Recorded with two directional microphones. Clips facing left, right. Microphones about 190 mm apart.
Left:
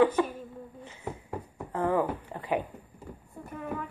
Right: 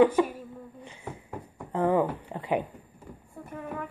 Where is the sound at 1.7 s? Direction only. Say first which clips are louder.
Right 3 dB; 20° right (ahead or behind).